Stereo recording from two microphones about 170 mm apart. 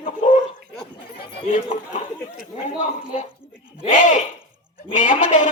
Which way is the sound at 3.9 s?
45° left (ahead or behind).